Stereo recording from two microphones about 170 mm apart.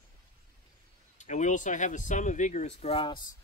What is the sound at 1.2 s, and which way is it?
Speech, 45° left (ahead or behind).